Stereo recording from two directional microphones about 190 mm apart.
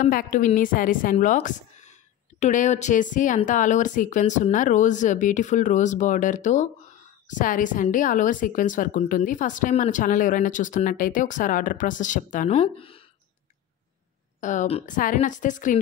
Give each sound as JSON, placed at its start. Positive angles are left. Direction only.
{"t": 0.0, "sound": "a woman's voice", "side_deg": 45}
{"t": 14.4, "sound": "speech", "side_deg": 40}